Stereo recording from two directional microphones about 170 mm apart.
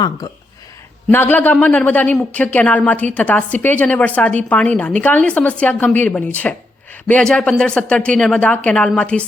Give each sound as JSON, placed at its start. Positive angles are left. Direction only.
{"t": 0.2, "sound": "speech", "side_deg": 25}
{"t": 1.1, "sound": "a woman's voice", "side_deg": 10}